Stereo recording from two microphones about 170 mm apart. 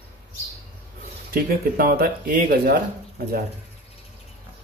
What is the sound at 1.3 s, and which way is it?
Speech, 60° right (ahead or behind).